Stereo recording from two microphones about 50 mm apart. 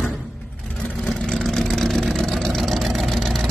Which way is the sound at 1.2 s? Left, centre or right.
Centre.